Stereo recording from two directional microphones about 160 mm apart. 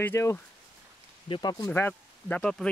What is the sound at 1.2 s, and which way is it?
Speech, 35° left (ahead or behind).